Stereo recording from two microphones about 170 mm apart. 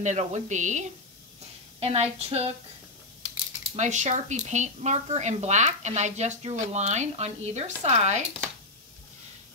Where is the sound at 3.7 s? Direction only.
45° right (ahead or behind).